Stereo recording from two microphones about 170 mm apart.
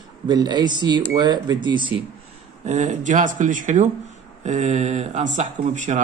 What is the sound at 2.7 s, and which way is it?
Speech, 45° right (ahead or behind).